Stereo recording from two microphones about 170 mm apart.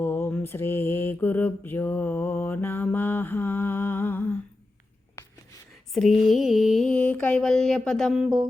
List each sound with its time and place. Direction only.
0.0 s mantra: 10° left (ahead or behind)
5.2 s writing: 15° left (ahead or behind)
5.9 s mantra: centre (ahead or behind)